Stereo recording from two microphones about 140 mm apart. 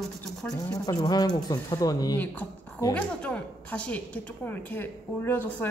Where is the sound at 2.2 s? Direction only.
10° left (ahead or behind).